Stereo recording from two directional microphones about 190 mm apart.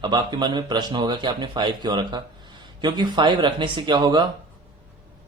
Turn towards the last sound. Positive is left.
turn(degrees=-20)  # may be behind; listen again after turning